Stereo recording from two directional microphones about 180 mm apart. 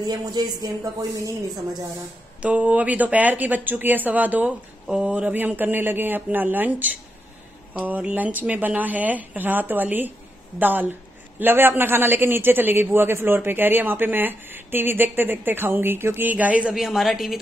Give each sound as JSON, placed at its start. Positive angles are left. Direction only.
{"t": 0.0, "sound": "a woman's voice", "side_deg": -20}
{"t": 2.4, "sound": "a woman's voice", "side_deg": -10}